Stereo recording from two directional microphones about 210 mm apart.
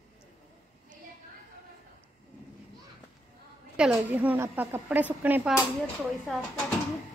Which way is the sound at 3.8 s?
5° right (ahead or behind).